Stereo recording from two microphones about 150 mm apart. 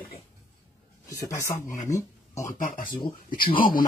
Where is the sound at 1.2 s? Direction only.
20° left (ahead or behind).